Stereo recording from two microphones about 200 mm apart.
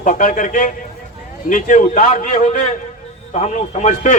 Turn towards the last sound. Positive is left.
turn(degrees=35)  # may be behind; listen again after turning